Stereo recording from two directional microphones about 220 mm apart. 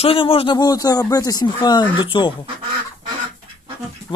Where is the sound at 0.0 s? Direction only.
25° left (ahead or behind).